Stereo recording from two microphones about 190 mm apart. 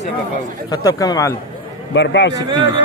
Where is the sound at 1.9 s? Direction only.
65° left (ahead or behind).